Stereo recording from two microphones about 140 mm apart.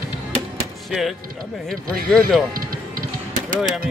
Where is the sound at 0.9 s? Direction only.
Centre (ahead or behind).